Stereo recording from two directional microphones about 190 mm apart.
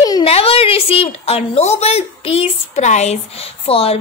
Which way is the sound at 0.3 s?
30° left (ahead or behind).